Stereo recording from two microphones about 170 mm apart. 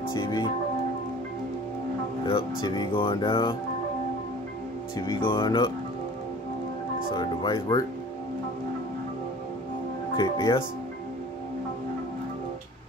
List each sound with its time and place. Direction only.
0.1 s music: 25° left (ahead or behind)
2.2 s speech: 25° left (ahead or behind)
4.9 s speech: 25° left (ahead or behind)
7.2 s speech: 25° left (ahead or behind)
10.1 s speech: 25° left (ahead or behind)